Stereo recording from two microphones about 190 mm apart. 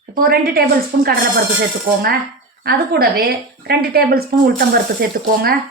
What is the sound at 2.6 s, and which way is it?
Speech, 55° right (ahead or behind).